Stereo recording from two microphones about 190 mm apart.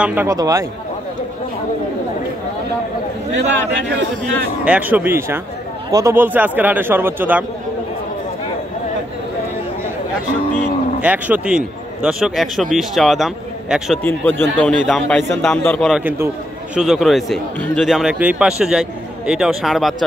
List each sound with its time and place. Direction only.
0.0 s speech: 10° right (ahead or behind)
4.6 s speech: 10° right (ahead or behind)
11.0 s a man's voice: 10° right (ahead or behind)
16.0 s a man's voice: 10° right (ahead or behind)